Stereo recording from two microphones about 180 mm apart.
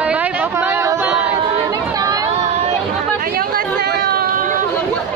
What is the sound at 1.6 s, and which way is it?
Chatter, 20° right (ahead or behind).